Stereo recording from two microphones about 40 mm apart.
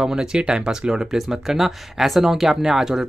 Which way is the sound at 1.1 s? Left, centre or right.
Centre.